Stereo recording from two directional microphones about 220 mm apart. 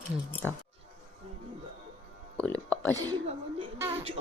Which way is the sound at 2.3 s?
5° left (ahead or behind).